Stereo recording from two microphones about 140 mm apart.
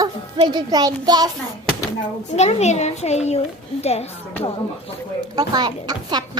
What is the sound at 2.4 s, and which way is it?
A child's voice, 50° left (ahead or behind).